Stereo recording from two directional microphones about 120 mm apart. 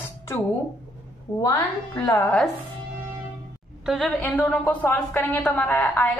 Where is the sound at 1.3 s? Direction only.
30° left (ahead or behind).